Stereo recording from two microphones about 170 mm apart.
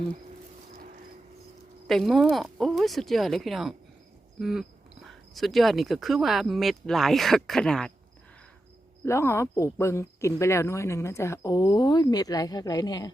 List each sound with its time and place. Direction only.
1.9 s speech: centre (ahead or behind)
4.4 s cricket: centre (ahead or behind)
5.0 s speech: centre (ahead or behind)
9.0 s speech: 15° left (ahead or behind)